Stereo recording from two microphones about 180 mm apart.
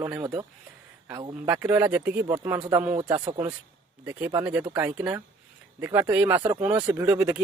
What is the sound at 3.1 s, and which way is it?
Speech, 35° right (ahead or behind).